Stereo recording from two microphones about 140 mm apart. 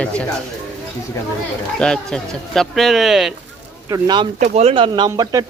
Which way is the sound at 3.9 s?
30° right (ahead or behind).